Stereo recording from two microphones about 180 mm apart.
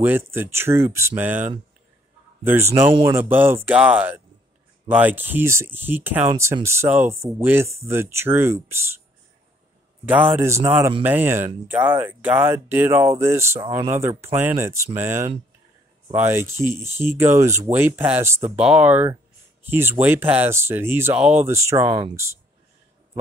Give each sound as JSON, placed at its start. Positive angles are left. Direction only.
{"t": 0.0, "sound": "speech", "side_deg": -10}
{"t": 2.9, "sound": "speech", "side_deg": -30}
{"t": 3.2, "sound": "speech", "side_deg": -10}
{"t": 10.3, "sound": "speech", "side_deg": -15}
{"t": 13.6, "sound": "speech", "side_deg": -30}
{"t": 13.9, "sound": "speech", "side_deg": -15}
{"t": 21.8, "sound": "speech", "side_deg": -30}
{"t": 22.1, "sound": "speech", "side_deg": -15}